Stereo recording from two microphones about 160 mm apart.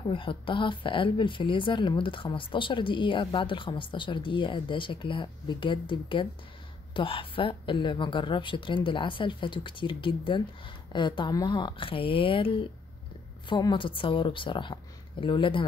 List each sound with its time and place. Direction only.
0.0 s speech: 30° left (ahead or behind)